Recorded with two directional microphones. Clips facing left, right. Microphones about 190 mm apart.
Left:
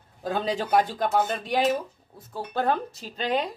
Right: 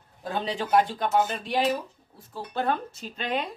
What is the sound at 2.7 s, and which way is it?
Speech, 35° left (ahead or behind).